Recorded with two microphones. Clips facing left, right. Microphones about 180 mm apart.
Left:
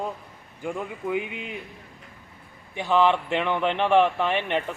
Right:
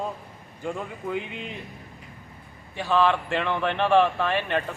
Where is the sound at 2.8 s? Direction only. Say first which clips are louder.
Left 1 dB; 20° left (ahead or behind).